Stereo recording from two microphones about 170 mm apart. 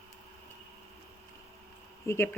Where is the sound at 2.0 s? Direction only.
15° left (ahead or behind).